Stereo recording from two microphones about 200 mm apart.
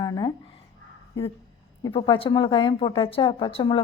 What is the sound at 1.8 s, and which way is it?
A woman's voice, 25° left (ahead or behind).